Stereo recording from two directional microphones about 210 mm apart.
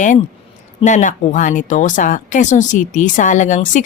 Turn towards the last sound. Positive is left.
turn(degrees=35)  # may be behind; listen again after turning